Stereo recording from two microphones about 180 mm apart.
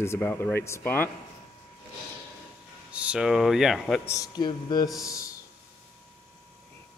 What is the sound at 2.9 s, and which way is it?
Speech, 5° right (ahead or behind).